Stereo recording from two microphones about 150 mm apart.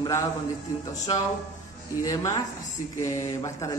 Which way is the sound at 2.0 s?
25° left (ahead or behind).